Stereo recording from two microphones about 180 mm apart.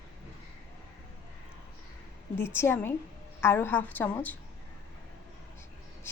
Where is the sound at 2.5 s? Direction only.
10° left (ahead or behind).